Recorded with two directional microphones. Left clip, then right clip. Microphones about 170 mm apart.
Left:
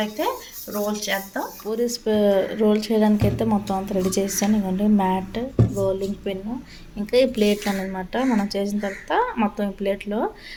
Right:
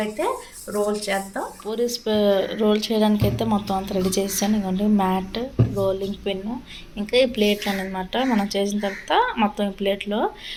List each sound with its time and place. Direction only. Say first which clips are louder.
0.9 s a woman's voice: right 1 dB; 5° right (ahead or behind)
1.6 s a woman's voice: even; 10° left (ahead or behind); by 6.3 s 5° right (ahead or behind)
6.9 s speech: even; 10° left (ahead or behind)